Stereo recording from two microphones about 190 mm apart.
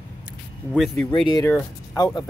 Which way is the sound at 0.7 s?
Centre (ahead or behind).